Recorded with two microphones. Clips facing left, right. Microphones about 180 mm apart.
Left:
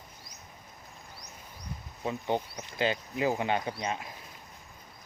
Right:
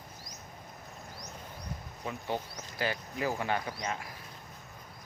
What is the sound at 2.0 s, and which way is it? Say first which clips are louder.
Speech: left 5 dB; 20° left (ahead or behind).